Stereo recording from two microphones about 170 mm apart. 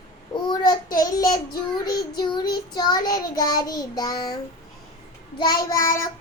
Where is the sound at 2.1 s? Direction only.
25° left (ahead or behind).